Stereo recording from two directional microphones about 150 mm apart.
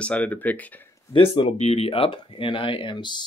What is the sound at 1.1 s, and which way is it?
Speech, 35° left (ahead or behind).